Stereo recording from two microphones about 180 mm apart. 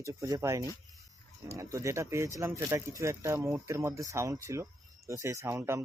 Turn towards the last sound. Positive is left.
turn(degrees=-15)  # may be behind; listen again after turning